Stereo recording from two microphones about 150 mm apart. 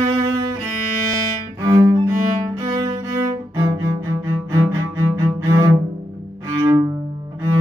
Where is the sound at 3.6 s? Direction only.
20° right (ahead or behind).